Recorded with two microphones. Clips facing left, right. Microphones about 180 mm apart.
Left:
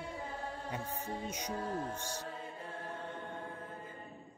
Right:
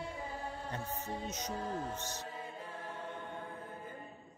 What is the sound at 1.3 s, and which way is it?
Speech, 10° left (ahead or behind).